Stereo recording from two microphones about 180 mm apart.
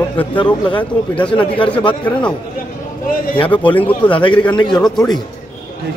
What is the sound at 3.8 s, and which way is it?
Speech, 10° left (ahead or behind).